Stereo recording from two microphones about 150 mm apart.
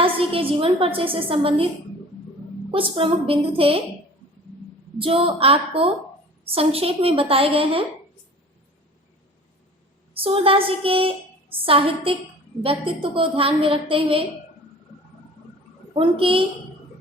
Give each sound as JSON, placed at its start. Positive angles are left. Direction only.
{"t": 0.0, "sound": "a woman's voice", "side_deg": -35}
{"t": 2.7, "sound": "a woman's voice", "side_deg": -35}
{"t": 4.9, "sound": "a woman's voice", "side_deg": -35}
{"t": 10.2, "sound": "a woman's voice", "side_deg": -40}
{"t": 16.0, "sound": "a woman's voice", "side_deg": -35}